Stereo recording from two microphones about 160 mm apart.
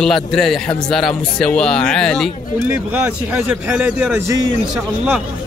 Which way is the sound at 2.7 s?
10° right (ahead or behind).